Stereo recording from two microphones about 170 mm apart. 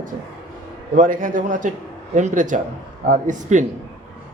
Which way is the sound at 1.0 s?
50° right (ahead or behind).